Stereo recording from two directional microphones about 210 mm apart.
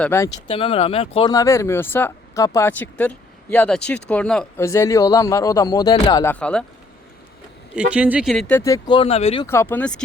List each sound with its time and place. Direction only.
0.0 s speech: 10° left (ahead or behind)
6.2 s speech: 5° left (ahead or behind)
7.8 s speech: 5° right (ahead or behind); by 9.5 s 25° left (ahead or behind)
9.5 s speech: 10° left (ahead or behind)